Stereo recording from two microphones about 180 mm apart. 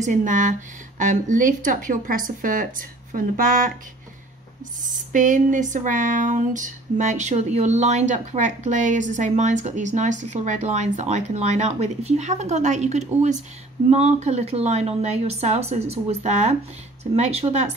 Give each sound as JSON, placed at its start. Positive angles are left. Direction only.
{"t": 0.0, "sound": "speech", "side_deg": -45}
{"t": 4.8, "sound": "speech", "side_deg": -45}